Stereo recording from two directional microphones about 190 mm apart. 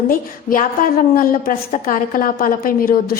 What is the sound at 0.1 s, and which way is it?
A woman's voice, 45° left (ahead or behind).